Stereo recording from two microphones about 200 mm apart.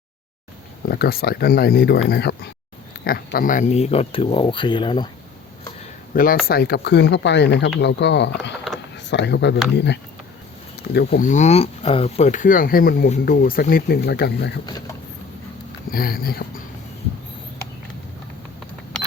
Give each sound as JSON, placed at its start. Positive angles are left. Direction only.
{"t": 0.9, "sound": "speech", "side_deg": 50}
{"t": 6.1, "sound": "speech", "side_deg": 45}
{"t": 10.9, "sound": "speech", "side_deg": 45}
{"t": 15.9, "sound": "speech", "side_deg": 45}